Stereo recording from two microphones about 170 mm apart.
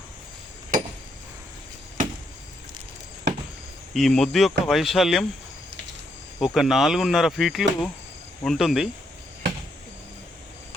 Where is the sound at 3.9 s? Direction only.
Centre (ahead or behind).